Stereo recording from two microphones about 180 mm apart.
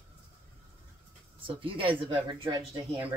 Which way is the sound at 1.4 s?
30° right (ahead or behind).